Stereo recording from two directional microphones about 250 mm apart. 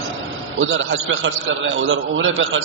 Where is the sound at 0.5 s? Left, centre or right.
Right.